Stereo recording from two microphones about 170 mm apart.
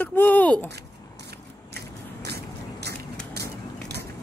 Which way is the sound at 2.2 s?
75° right (ahead or behind).